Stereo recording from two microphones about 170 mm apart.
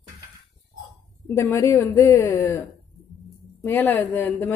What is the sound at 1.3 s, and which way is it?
Speech, 15° left (ahead or behind).